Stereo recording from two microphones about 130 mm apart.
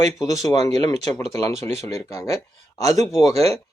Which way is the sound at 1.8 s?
25° left (ahead or behind).